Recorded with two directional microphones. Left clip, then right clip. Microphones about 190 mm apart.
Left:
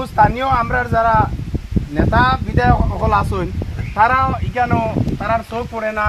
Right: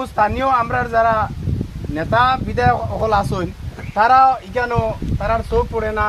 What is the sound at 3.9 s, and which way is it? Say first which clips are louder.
Speech: right 3 dB; 60° right (ahead or behind).